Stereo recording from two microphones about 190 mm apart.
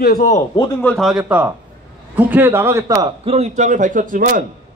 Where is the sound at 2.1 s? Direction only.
10° right (ahead or behind); by 4.4 s 45° right (ahead or behind).